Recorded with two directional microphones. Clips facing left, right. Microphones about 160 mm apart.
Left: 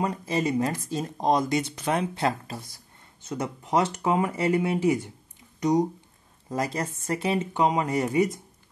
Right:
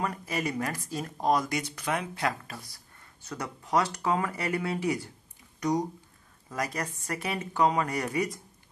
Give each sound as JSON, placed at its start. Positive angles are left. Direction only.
{"t": 0.0, "sound": "speech", "side_deg": 25}